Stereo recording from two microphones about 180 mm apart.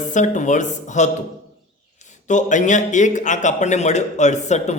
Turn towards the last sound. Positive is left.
turn(degrees=40)  # may be behind; listen again after turning